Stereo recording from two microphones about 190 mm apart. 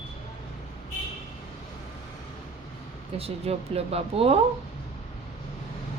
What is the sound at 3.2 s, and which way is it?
Speech, 30° right (ahead or behind).